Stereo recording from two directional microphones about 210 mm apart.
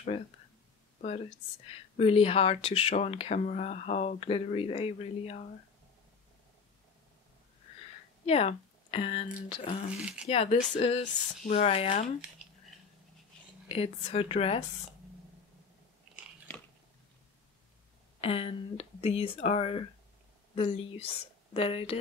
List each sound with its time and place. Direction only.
2.0 s speech: 30° left (ahead or behind)
8.3 s speech: 30° left (ahead or behind)
13.7 s speech: 30° left (ahead or behind)
18.2 s speech: 30° left (ahead or behind)